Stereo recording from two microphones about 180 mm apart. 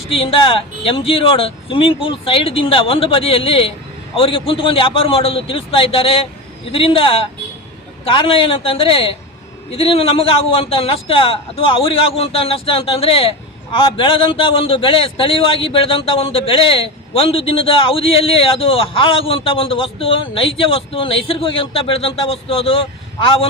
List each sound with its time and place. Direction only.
0.1 s a man's voice: 30° left (ahead or behind)